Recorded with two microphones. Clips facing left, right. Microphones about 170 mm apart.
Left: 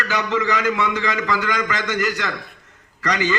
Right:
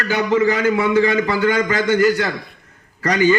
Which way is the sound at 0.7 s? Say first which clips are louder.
Right 7 dB; 45° right (ahead or behind).